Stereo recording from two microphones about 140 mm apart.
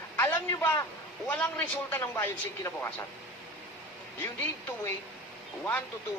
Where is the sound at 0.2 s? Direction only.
15° left (ahead or behind).